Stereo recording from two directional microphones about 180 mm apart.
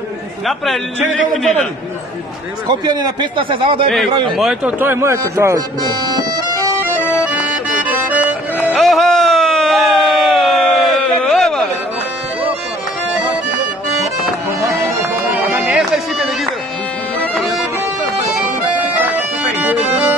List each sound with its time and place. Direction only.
1.3 s a man's voice: centre (ahead or behind)
2.7 s speech: 20° right (ahead or behind)
4.4 s a man's voice: 5° right (ahead or behind)
6.1 s bagpipes: 20° right (ahead or behind)
7.1 s accordion: 10° right (ahead or behind)
8.7 s a sound: centre (ahead or behind)
14.9 s music: 15° right (ahead or behind)
19.1 s bagpipes: 10° right (ahead or behind)